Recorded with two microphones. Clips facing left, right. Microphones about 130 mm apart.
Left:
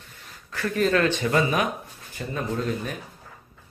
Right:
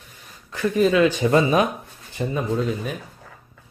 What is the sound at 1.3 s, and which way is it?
Speech, 25° right (ahead or behind).